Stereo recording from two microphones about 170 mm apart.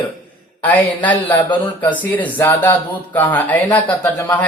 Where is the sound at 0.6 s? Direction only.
10° left (ahead or behind).